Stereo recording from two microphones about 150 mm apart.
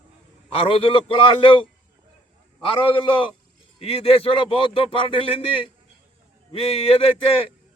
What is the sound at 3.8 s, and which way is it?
Speech, 40° left (ahead or behind).